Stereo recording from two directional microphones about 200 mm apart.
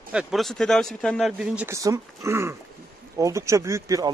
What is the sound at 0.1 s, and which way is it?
Speech, 5° right (ahead or behind).